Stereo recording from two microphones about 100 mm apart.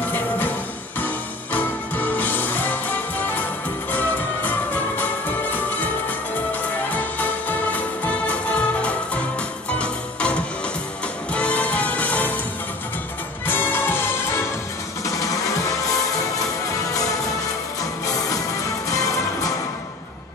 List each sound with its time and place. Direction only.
0.0 s music: 20° left (ahead or behind)
6.9 s music: 15° left (ahead or behind)
13.5 s music: 20° left (ahead or behind)
15.0 s music: 35° left (ahead or behind)
18.9 s music: 35° left (ahead or behind)